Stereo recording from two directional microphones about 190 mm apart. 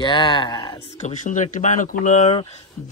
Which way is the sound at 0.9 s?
40° left (ahead or behind).